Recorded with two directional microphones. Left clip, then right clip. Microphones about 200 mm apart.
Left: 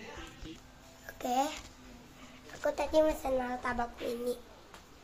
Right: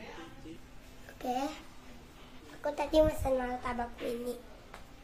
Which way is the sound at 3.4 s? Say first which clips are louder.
Left 1 dB; 15° left (ahead or behind).